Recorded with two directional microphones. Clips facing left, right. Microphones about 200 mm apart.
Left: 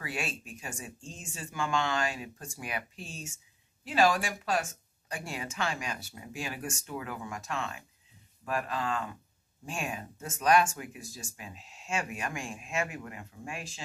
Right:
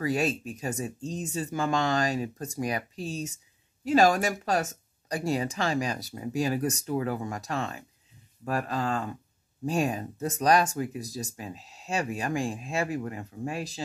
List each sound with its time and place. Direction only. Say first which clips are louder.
0.0 s speech: right 10 dB; 40° right (ahead or behind)